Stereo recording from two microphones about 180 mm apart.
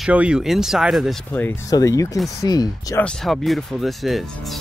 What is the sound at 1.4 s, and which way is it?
Speech, 15° left (ahead or behind).